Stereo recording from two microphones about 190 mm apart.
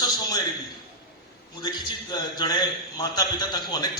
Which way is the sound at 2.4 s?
20° left (ahead or behind).